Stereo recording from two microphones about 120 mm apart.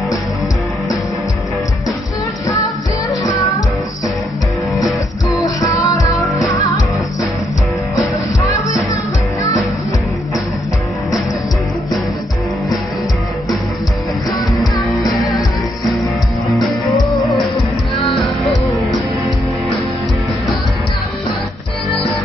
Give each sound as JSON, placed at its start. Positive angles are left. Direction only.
{"t": 3.1, "sound": "music", "side_deg": 30}
{"t": 5.4, "sound": "music", "side_deg": 30}
{"t": 7.9, "sound": "music", "side_deg": 25}
{"t": 16.5, "sound": "music", "side_deg": 0}